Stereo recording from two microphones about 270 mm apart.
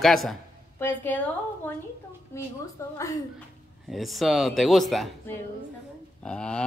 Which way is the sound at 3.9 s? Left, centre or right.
Centre.